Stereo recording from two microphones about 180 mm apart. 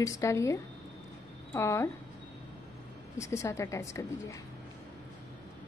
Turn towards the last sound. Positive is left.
turn(degrees=15)  # may be behind; listen again after turning